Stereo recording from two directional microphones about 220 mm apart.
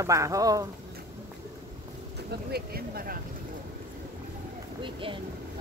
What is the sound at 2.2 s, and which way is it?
Speech, 45° right (ahead or behind).